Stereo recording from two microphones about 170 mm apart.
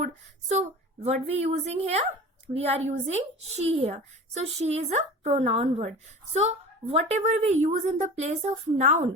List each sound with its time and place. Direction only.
0.0 s a woman's voice: 45° right (ahead or behind)